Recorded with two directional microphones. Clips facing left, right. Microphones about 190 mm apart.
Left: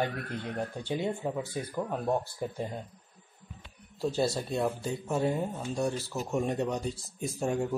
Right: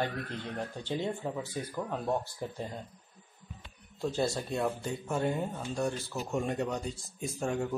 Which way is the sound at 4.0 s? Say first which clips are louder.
Left 2 dB; 5° left (ahead or behind).